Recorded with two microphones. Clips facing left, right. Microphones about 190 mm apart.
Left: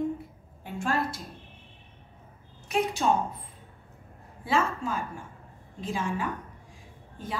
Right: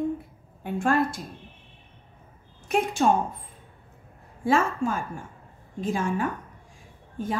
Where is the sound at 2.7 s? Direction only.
50° right (ahead or behind).